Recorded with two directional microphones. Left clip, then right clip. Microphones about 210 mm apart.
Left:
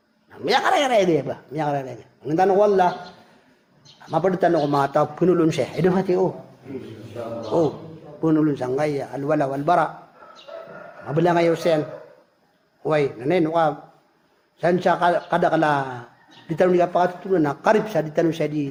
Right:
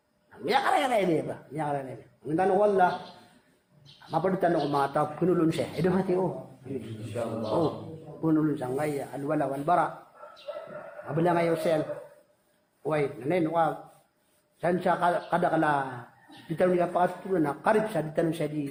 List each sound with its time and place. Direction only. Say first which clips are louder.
0.4 s a man's voice: left 6 dB; 50° left (ahead or behind)
4.1 s a man's voice: left 7 dB; 50° left (ahead or behind)
8.2 s a man's voice: left 7 dB; 45° left (ahead or behind)
11.1 s a man's voice: left 7 dB; 50° left (ahead or behind)
12.8 s a man's voice: left 7 dB; 50° left (ahead or behind)